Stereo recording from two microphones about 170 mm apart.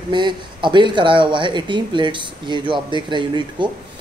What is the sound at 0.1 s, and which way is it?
A woman's voice, 25° right (ahead or behind).